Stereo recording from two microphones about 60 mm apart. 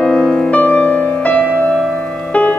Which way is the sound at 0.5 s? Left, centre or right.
Left.